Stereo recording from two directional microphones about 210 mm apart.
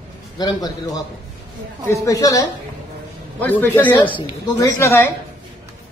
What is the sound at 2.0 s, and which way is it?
A man's voice, 15° left (ahead or behind).